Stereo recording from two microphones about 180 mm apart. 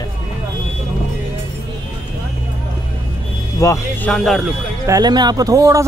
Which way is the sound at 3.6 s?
15° left (ahead or behind).